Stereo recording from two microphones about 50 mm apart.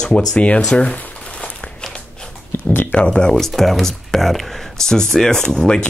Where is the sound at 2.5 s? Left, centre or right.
Left.